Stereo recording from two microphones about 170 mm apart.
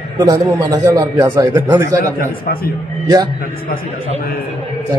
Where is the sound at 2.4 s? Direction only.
60° left (ahead or behind).